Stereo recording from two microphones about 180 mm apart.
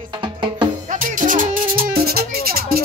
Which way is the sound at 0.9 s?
45° right (ahead or behind).